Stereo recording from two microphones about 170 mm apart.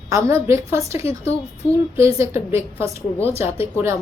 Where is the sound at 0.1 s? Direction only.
15° right (ahead or behind).